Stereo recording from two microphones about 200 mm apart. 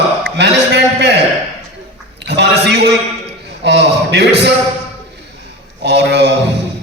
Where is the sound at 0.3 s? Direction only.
55° right (ahead or behind).